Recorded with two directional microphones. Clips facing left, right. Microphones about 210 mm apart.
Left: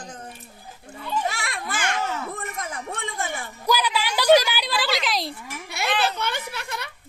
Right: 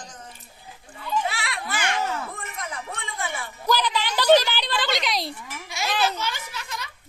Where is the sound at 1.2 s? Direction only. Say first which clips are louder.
Left 1 dB; 45° left (ahead or behind).